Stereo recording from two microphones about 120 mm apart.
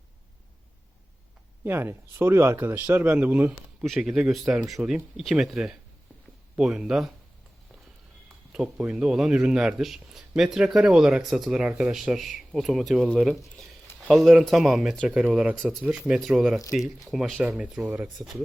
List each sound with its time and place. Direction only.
1.6 s speech: 20° right (ahead or behind)
3.8 s a man's voice: centre (ahead or behind)
8.5 s a man's voice: 10° right (ahead or behind)